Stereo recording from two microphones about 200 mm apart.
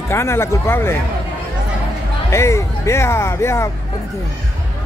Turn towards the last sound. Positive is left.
turn(degrees=15)  # may be behind; listen again after turning